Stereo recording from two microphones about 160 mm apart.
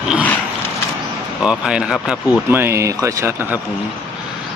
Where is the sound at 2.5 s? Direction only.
15° right (ahead or behind).